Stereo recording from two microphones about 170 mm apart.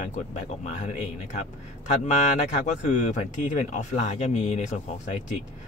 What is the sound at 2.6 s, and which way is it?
Speech, 45° left (ahead or behind).